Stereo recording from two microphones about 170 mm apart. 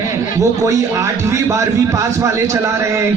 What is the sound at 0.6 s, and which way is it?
A man's voice, 20° right (ahead or behind).